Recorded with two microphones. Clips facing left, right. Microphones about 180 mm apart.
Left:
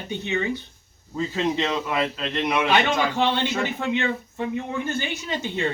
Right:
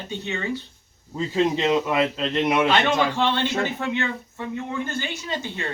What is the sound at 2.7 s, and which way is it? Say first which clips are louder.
Speech: right 1 dB; 15° left (ahead or behind).